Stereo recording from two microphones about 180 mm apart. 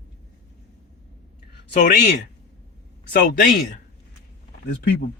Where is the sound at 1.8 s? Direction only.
70° left (ahead or behind).